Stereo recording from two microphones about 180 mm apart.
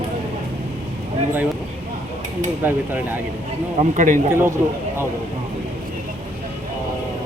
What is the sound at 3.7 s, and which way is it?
Speech, 45° right (ahead or behind).